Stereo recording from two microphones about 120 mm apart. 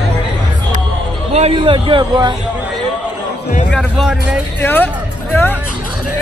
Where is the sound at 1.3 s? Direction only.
60° right (ahead or behind).